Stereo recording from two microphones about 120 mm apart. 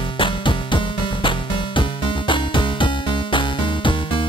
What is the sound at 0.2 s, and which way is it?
Music, 45° left (ahead or behind).